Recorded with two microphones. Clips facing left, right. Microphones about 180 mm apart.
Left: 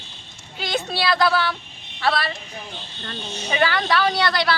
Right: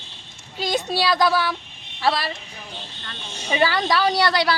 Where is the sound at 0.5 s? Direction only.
40° right (ahead or behind).